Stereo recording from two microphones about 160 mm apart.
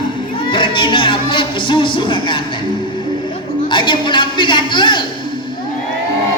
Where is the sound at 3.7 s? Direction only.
30° left (ahead or behind).